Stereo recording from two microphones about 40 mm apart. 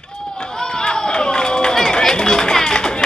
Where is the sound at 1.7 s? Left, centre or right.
Centre.